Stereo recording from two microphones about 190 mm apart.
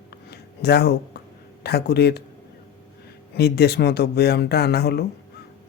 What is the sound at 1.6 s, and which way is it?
Speech, 60° left (ahead or behind).